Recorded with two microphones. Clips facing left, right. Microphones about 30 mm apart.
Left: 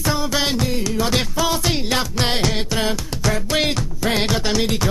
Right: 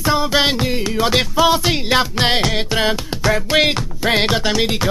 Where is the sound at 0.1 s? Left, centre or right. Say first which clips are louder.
Right 6 dB; right.